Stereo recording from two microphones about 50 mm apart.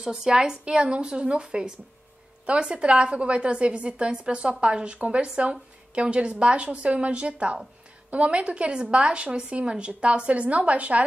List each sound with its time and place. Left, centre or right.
0.0 s a woman's voice: centre; by 11.1 s right